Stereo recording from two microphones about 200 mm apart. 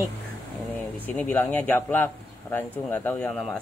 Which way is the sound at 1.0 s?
10° left (ahead or behind).